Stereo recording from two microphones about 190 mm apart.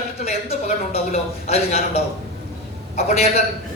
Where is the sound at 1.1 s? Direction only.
35° left (ahead or behind).